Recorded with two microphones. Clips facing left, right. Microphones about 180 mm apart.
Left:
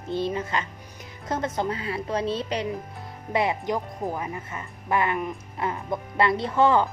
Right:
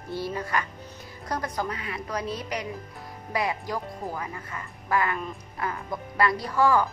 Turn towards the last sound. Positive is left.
turn(degrees=25)  # may be behind; listen again after turning